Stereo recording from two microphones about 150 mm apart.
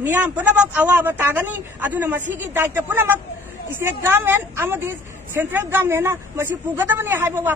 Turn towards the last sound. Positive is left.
turn(degrees=-15)  # may be behind; listen again after turning